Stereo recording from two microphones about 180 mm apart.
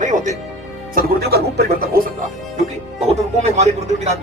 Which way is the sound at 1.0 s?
55° right (ahead or behind).